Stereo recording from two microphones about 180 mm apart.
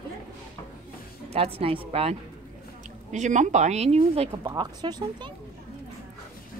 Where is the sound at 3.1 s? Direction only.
40° right (ahead or behind).